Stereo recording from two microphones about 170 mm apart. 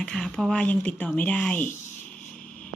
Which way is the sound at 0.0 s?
5° left (ahead or behind).